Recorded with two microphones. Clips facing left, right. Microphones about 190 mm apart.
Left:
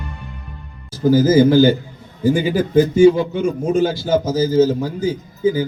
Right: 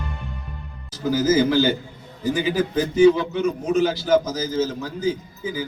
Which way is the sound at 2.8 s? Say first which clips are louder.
Left 5 dB; 25° left (ahead or behind).